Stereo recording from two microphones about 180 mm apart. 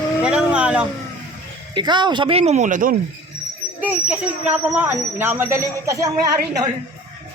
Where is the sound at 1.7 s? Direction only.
25° right (ahead or behind); by 2.9 s 50° right (ahead or behind).